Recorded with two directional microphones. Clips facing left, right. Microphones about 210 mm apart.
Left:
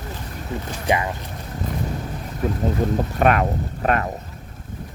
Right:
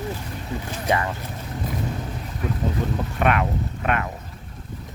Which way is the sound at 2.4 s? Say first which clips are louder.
Left 4 dB; 40° left (ahead or behind).